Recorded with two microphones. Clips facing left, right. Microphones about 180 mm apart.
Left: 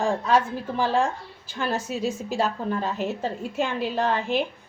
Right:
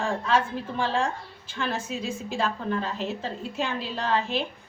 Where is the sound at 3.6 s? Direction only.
50° left (ahead or behind).